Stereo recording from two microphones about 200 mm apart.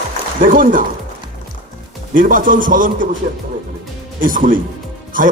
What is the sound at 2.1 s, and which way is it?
Speech, 45° right (ahead or behind).